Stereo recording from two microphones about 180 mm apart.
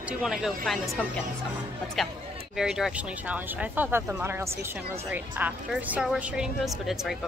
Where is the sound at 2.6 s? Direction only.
5° right (ahead or behind).